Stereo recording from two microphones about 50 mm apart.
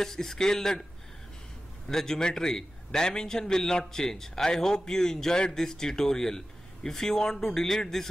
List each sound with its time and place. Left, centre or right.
0.0 s a man's voice: centre
1.9 s a man's voice: centre